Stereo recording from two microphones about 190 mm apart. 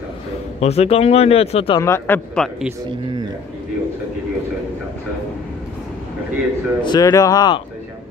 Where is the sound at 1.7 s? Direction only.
15° left (ahead or behind).